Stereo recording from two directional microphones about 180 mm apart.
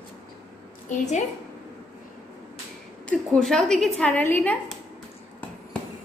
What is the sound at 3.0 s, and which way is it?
A woman's voice, 5° left (ahead or behind).